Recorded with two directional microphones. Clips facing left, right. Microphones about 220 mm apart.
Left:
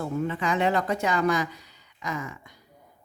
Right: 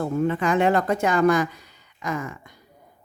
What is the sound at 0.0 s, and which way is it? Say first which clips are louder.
Speech: right 5 dB; 50° right (ahead or behind).